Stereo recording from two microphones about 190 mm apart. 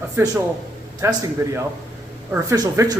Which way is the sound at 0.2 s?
15° right (ahead or behind).